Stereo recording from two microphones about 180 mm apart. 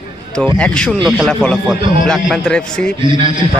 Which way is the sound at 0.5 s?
5° left (ahead or behind).